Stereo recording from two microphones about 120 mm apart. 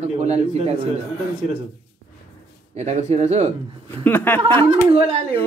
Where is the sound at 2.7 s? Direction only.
65° right (ahead or behind).